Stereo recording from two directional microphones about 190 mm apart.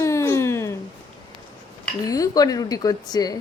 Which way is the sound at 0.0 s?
15° left (ahead or behind).